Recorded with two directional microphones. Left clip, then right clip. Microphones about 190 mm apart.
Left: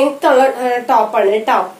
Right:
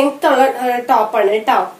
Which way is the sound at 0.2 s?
10° left (ahead or behind).